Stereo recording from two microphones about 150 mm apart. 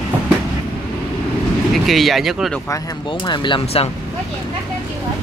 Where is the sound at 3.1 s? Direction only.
30° left (ahead or behind).